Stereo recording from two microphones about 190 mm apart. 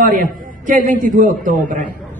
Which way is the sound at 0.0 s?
45° right (ahead or behind).